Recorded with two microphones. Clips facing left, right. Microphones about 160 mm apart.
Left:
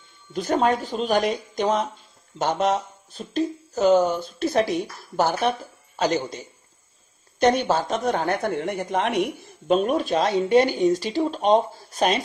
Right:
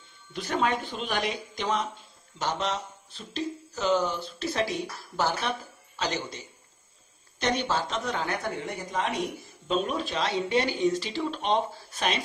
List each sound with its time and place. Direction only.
0.3 s speech: 40° left (ahead or behind)